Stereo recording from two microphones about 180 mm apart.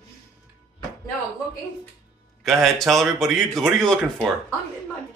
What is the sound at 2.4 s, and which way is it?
Speech, centre (ahead or behind).